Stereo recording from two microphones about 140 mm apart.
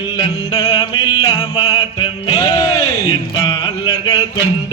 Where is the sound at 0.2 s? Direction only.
30° left (ahead or behind).